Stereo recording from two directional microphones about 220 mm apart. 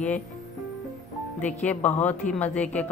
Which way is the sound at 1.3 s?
5° left (ahead or behind).